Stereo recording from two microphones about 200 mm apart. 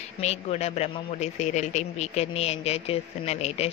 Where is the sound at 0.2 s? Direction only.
30° left (ahead or behind).